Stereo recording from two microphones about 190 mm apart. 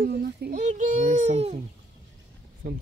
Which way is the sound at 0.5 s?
40° right (ahead or behind).